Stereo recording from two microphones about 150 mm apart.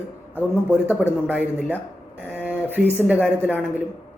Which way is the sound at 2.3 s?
10° right (ahead or behind).